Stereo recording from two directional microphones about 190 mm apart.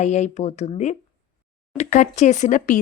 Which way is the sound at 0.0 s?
40° left (ahead or behind).